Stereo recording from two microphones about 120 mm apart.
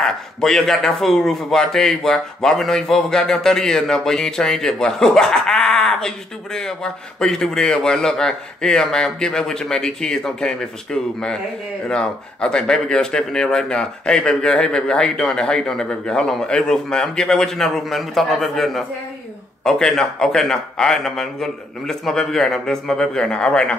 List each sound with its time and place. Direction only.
0.0 s a man's voice: 5° left (ahead or behind)